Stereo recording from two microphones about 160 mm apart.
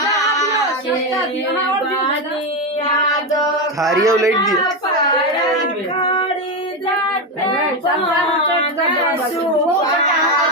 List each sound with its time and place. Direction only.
4.0 s speech: 20° right (ahead or behind)
6.0 s female singing: 30° left (ahead or behind)